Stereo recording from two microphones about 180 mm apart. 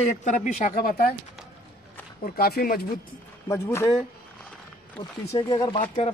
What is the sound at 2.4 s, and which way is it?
Speech, 55° left (ahead or behind).